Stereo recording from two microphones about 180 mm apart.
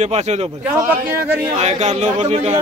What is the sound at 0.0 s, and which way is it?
Speech, 40° right (ahead or behind).